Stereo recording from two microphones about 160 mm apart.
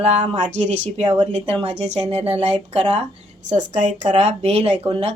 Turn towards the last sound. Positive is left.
turn(degrees=-35)  # may be behind; listen again after turning